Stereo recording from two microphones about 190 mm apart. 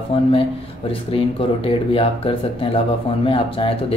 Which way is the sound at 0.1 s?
30° left (ahead or behind).